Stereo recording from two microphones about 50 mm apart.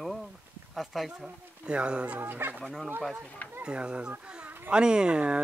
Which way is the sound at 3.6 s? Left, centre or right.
Right.